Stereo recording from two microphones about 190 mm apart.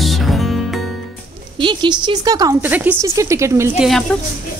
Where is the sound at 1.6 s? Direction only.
25° right (ahead or behind).